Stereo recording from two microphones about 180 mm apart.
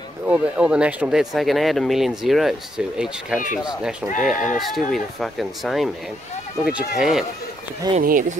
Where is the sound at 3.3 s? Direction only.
45° left (ahead or behind).